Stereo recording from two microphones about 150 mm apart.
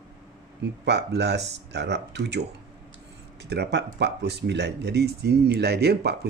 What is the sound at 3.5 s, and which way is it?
Speech, 90° right.